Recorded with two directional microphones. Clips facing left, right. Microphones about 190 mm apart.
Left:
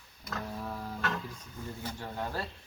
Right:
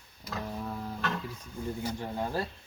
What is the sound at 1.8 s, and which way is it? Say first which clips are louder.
Speech: right 3 dB; 15° right (ahead or behind).